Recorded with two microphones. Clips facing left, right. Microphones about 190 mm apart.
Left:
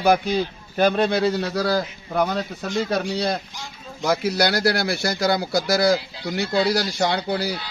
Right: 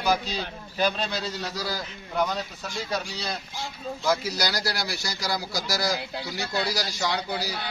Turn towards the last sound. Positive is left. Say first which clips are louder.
# left 6 dB
turn(degrees=60)  # may be behind; listen again after turning